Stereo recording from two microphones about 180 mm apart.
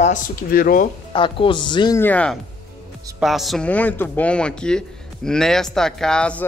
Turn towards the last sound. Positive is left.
turn(degrees=5)  # may be behind; listen again after turning